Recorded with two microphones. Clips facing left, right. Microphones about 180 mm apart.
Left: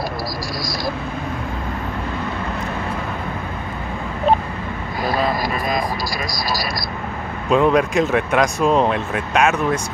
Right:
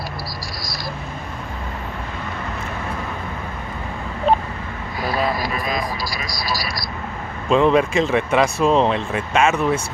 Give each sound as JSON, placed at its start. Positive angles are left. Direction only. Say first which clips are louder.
{"t": 5.0, "sound": "vehicle", "louder": "left 2 dB", "side_deg": 45}
{"t": 7.4, "sound": "speech", "louder": "even", "side_deg": 5}